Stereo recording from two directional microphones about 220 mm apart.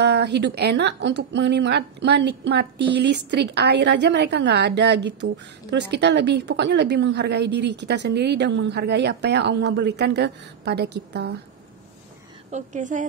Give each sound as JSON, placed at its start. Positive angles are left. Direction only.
{"t": 0.0, "sound": "a woman's voice", "side_deg": -50}
{"t": 12.4, "sound": "a woman's voice", "side_deg": -35}